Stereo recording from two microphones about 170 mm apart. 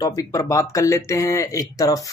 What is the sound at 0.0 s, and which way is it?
Speech, 20° left (ahead or behind).